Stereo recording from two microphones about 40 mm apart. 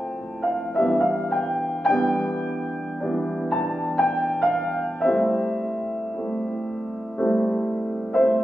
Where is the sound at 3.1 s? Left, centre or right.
Centre.